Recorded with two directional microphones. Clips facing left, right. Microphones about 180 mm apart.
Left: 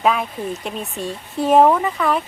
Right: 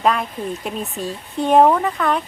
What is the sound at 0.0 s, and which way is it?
Speech, centre (ahead or behind).